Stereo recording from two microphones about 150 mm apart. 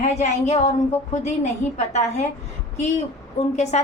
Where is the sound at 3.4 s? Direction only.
45° left (ahead or behind).